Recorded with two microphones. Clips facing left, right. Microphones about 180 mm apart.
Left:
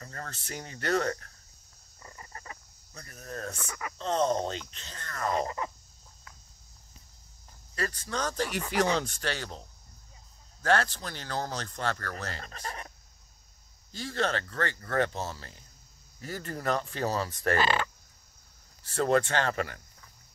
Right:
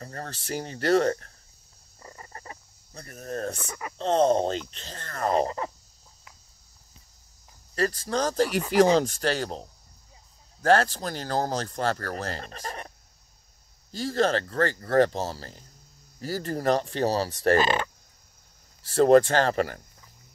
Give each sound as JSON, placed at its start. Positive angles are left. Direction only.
{"t": 0.0, "sound": "speech", "side_deg": -35}
{"t": 2.0, "sound": "a sound", "side_deg": -30}
{"t": 3.6, "sound": "speech", "side_deg": -30}
{"t": 7.7, "sound": "speech", "side_deg": -35}
{"t": 8.5, "sound": "speech", "side_deg": -5}
{"t": 8.7, "sound": "speech", "side_deg": -35}
{"t": 13.9, "sound": "speech", "side_deg": -40}
{"t": 17.6, "sound": "speech", "side_deg": -20}
{"t": 18.9, "sound": "speech", "side_deg": -35}